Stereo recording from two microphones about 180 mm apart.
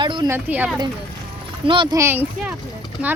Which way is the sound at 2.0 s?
10° right (ahead or behind).